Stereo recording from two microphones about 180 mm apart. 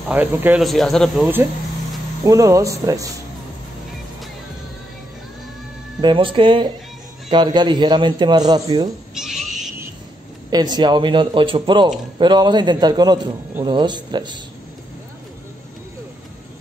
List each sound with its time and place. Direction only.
0.1 s speech: 10° right (ahead or behind)
0.7 s speech: centre (ahead or behind)
2.2 s speech: 20° right (ahead or behind)
5.9 s a man's voice: 25° right (ahead or behind)
9.1 s a sound: centre (ahead or behind)
10.5 s a man's voice: 25° right (ahead or behind)